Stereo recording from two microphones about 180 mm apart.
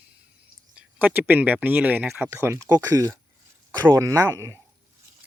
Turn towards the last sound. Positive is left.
turn(degrees=-15)  # may be behind; listen again after turning